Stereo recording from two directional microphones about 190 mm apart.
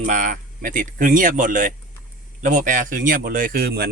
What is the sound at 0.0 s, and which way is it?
Speech, 40° right (ahead or behind).